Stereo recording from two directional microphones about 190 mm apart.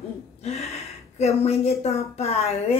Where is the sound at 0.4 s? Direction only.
35° left (ahead or behind).